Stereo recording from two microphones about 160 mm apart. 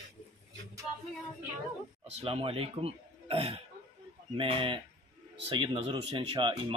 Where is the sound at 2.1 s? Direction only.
35° right (ahead or behind).